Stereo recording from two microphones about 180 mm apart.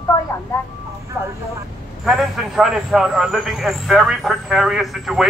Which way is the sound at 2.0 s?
Centre (ahead or behind).